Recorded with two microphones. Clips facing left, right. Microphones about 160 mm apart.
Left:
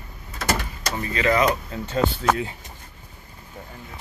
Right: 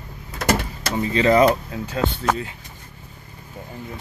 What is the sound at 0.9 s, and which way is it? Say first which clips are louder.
Speech: right 5 dB; 25° right (ahead or behind).